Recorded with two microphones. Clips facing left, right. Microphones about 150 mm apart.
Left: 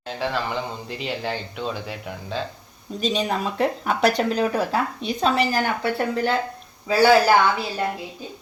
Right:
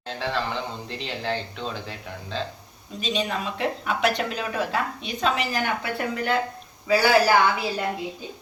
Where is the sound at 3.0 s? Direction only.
35° left (ahead or behind).